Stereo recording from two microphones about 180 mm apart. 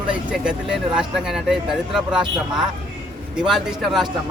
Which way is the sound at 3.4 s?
5° right (ahead or behind).